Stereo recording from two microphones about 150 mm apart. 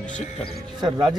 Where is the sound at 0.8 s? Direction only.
25° right (ahead or behind).